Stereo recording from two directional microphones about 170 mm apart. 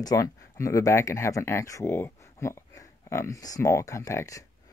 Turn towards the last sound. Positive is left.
turn(degrees=20)  # may be behind; listen again after turning